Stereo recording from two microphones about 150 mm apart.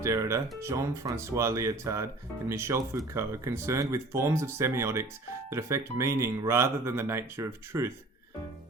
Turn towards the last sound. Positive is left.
turn(degrees=-20)  # may be behind; listen again after turning